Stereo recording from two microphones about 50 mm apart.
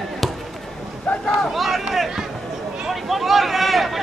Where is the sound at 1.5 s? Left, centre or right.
Centre.